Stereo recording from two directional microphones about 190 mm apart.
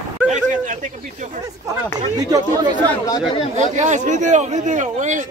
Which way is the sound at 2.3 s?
20° right (ahead or behind).